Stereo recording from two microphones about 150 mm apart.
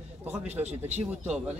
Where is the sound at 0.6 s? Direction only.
45° right (ahead or behind).